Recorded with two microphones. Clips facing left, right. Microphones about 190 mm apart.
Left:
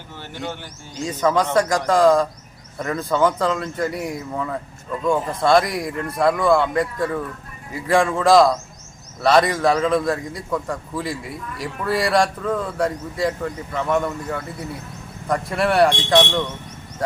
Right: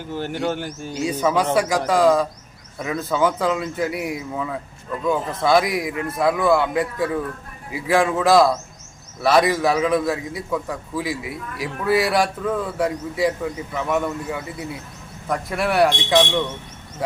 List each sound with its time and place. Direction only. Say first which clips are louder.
0.1 s speech: right 7 dB; 45° right (ahead or behind)
0.9 s a man's voice: left 1 dB; 10° right (ahead or behind)